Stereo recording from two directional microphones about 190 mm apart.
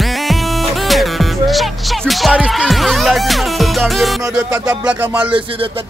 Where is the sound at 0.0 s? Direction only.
Centre (ahead or behind).